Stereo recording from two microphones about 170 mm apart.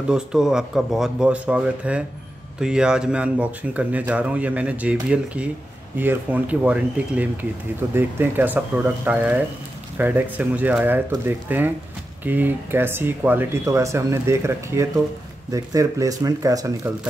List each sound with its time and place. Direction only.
0.1 s speech: 5° right (ahead or behind); by 16.9 s 20° right (ahead or behind)